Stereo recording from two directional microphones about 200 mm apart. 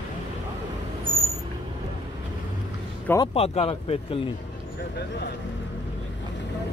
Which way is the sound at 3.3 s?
30° left (ahead or behind).